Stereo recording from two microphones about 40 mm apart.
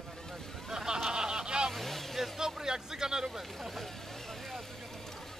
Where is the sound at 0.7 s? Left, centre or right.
Centre.